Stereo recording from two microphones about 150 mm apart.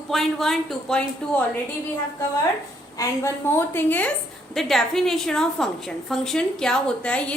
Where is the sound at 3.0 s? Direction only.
15° left (ahead or behind).